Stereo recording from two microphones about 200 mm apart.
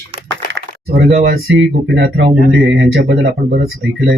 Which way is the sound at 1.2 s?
50° right (ahead or behind).